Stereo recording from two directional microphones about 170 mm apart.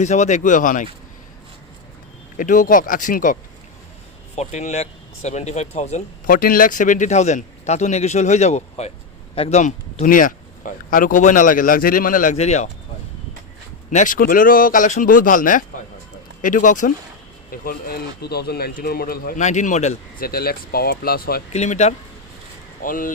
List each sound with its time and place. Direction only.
0.0 s speech: 45° left (ahead or behind)
2.4 s speech: 50° left (ahead or behind)
4.4 s speech: 40° left (ahead or behind)
6.3 s speech: 55° left (ahead or behind); by 12.6 s 40° left (ahead or behind)
13.9 s speech: 50° left (ahead or behind)
20.2 s speech: 60° left (ahead or behind)
21.5 s speech: 40° left (ahead or behind)
22.8 s speech: 55° left (ahead or behind)